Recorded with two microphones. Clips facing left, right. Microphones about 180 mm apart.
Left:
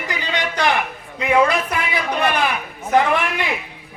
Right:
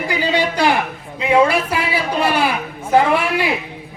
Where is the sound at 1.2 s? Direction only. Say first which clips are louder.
Right 2 dB; 30° right (ahead or behind).